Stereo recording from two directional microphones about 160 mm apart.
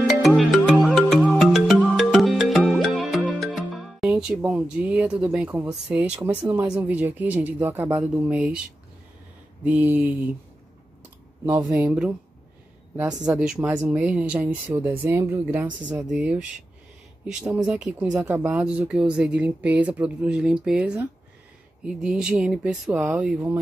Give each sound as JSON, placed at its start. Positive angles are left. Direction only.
{"t": 0.4, "sound": "music", "side_deg": 0}
{"t": 3.5, "sound": "speech", "side_deg": 0}
{"t": 9.7, "sound": "speech", "side_deg": -10}
{"t": 11.7, "sound": "speech", "side_deg": -10}